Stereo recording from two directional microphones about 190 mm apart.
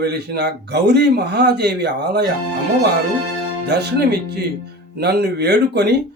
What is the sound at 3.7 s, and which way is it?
A man's voice, 60° right (ahead or behind).